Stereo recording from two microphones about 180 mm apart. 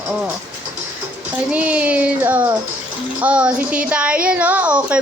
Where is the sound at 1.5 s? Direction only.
5° right (ahead or behind).